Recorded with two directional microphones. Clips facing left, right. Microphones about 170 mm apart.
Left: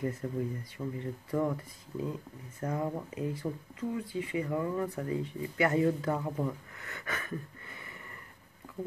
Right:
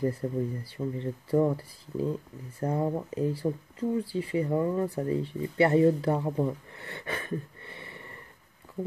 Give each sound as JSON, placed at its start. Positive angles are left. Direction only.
{"t": 0.0, "sound": "speech", "side_deg": -30}